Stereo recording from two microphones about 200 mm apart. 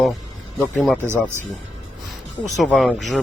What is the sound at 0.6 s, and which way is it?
Speech, centre (ahead or behind).